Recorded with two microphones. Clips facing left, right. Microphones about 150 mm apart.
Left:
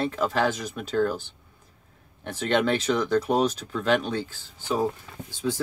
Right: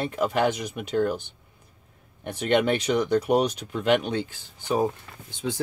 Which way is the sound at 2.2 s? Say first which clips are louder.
Right 1 dB; 15° right (ahead or behind).